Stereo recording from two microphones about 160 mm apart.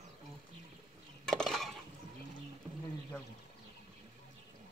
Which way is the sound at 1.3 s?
5° left (ahead or behind).